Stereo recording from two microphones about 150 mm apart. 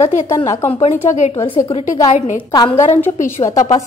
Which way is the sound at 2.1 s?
55° left (ahead or behind).